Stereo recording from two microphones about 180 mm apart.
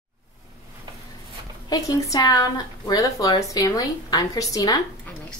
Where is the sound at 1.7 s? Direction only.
20° left (ahead or behind).